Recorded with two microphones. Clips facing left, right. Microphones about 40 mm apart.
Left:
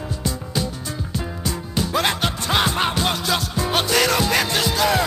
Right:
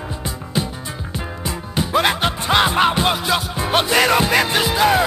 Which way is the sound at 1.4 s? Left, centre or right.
Right.